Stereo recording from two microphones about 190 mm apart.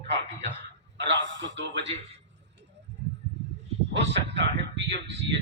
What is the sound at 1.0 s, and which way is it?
Speech, 75° right (ahead or behind).